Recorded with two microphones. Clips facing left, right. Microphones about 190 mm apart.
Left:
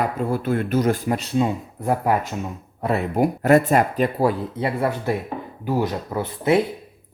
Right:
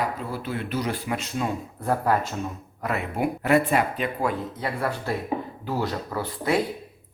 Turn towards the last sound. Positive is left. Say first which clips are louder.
# left 5 dB
turn(degrees=20)  # may be behind; listen again after turning